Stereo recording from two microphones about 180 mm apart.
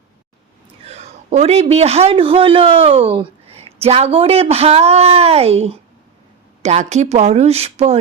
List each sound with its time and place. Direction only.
0.9 s a man's voice: 35° right (ahead or behind)